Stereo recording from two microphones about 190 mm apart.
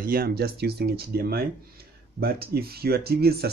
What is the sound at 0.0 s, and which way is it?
Speech, 50° right (ahead or behind).